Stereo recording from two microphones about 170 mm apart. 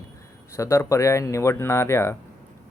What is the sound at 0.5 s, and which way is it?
Speech, 15° left (ahead or behind).